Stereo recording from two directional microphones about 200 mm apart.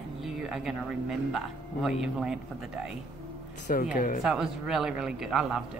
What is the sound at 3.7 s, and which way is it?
Speech, 45° left (ahead or behind).